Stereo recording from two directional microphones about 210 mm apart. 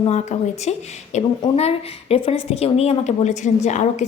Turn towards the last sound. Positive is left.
turn(degrees=35)  # may be behind; listen again after turning